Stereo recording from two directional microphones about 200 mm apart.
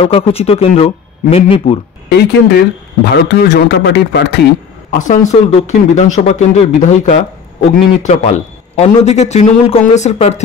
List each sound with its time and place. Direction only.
0.0 s speech: 30° left (ahead or behind)
2.0 s speech: 55° left (ahead or behind)
4.9 s a man's voice: 40° left (ahead or behind)